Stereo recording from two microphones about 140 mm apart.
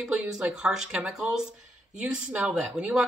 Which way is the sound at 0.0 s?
5° right (ahead or behind).